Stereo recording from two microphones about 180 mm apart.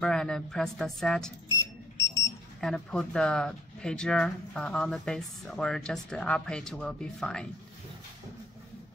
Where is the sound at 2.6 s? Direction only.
5° left (ahead or behind).